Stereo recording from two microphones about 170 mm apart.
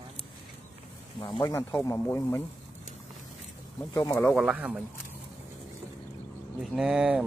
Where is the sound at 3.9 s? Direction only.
20° left (ahead or behind).